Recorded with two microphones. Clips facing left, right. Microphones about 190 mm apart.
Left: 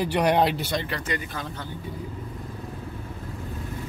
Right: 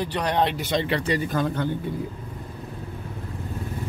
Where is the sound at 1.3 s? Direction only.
60° right (ahead or behind).